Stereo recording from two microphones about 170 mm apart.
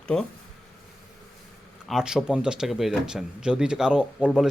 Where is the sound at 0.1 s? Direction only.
10° left (ahead or behind).